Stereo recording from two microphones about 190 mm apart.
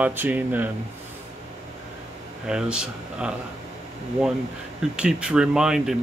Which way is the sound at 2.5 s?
5° right (ahead or behind).